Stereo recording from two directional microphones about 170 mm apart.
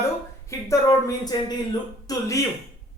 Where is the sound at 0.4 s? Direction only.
20° left (ahead or behind).